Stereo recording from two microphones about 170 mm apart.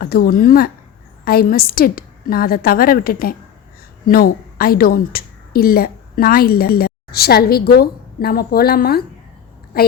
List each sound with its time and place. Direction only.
0.0 s a woman's voice: 65° left (ahead or behind)